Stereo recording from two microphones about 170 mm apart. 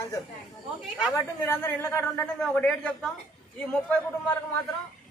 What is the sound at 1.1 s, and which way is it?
A man's voice, 15° left (ahead or behind).